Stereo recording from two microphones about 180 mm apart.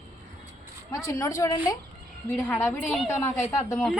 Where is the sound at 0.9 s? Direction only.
15° left (ahead or behind).